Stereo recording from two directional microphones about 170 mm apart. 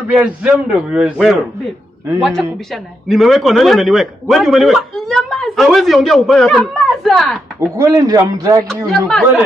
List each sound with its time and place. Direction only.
0.1 s a man's voice: 5° right (ahead or behind)
7.7 s a man's voice: 20° right (ahead or behind)
8.8 s a man's voice: centre (ahead or behind)